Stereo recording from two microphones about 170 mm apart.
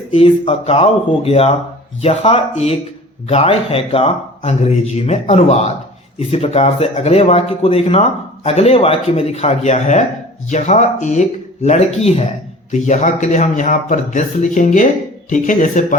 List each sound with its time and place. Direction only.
0.1 s speech: 35° left (ahead or behind)